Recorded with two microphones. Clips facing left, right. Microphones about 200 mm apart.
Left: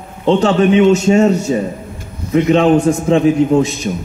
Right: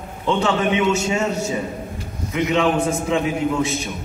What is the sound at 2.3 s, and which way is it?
A man's voice, 35° left (ahead or behind).